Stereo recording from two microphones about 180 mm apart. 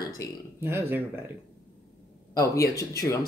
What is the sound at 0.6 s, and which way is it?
Speech, 15° right (ahead or behind).